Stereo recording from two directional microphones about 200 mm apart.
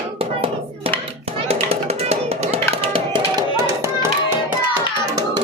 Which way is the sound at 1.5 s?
30° right (ahead or behind).